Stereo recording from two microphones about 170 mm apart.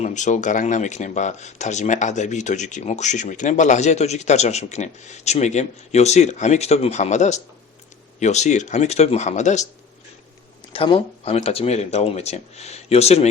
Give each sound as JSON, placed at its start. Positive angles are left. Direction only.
{"t": 0.0, "sound": "speech", "side_deg": 45}
{"t": 10.7, "sound": "speech", "side_deg": 30}